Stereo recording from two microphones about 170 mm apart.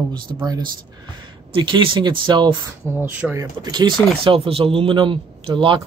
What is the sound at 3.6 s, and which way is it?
A man's voice, 25° right (ahead or behind).